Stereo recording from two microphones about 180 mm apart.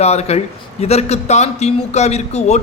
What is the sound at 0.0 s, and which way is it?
A man's voice, 35° left (ahead or behind).